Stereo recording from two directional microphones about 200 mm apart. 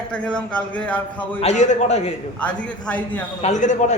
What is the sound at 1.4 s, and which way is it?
Speech, 35° left (ahead or behind).